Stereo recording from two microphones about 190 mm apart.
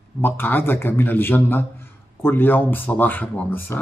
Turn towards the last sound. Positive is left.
turn(degrees=10)  # may be behind; listen again after turning